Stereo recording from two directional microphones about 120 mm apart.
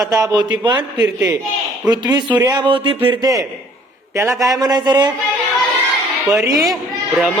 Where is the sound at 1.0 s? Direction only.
10° right (ahead or behind).